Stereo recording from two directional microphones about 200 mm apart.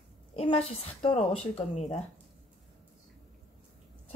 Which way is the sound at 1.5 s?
30° left (ahead or behind).